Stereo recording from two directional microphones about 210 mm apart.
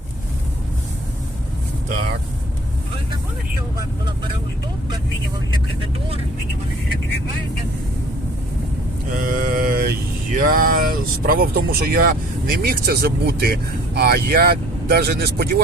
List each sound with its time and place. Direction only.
3.8 s speech: 20° right (ahead or behind)
5.5 s speech: 25° right (ahead or behind)
9.2 s a sound: 40° right (ahead or behind)